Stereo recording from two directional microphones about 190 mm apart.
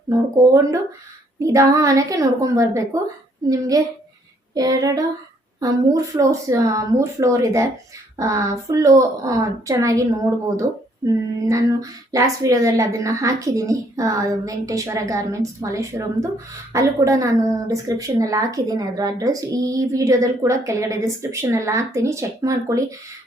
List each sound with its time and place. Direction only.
0.1 s a woman's voice: 20° right (ahead or behind)
3.4 s a sound: 20° right (ahead or behind)
5.5 s a woman's voice: 20° right (ahead or behind)